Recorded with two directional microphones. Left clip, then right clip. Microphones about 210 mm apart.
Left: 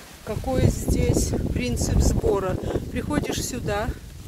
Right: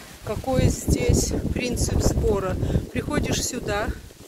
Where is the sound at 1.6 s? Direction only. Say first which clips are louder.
Right 3 dB; 15° left (ahead or behind).